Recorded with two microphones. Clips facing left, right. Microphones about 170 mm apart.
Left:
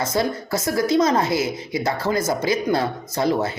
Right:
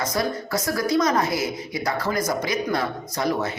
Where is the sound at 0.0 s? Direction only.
25° left (ahead or behind).